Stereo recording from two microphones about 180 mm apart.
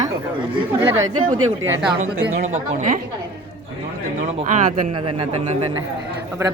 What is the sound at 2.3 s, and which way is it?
Speech, 45° right (ahead or behind).